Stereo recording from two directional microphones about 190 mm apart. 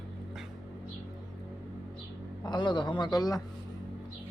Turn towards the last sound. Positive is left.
turn(degrees=20)  # may be behind; listen again after turning